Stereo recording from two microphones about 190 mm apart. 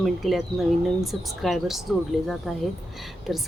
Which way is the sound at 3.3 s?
Centre (ahead or behind).